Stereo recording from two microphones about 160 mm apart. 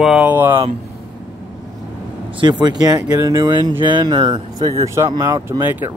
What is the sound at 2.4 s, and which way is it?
Speech, 30° right (ahead or behind).